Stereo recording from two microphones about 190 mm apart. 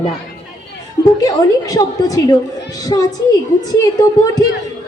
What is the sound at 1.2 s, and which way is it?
A woman's voice, 20° left (ahead or behind).